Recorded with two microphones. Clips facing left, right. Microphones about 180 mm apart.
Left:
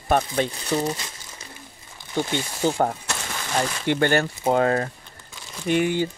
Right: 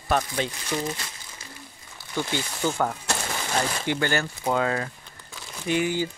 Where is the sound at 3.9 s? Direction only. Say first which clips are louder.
Left 7 dB; 55° left (ahead or behind).